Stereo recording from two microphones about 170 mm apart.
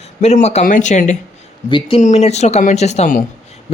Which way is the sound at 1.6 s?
30° left (ahead or behind).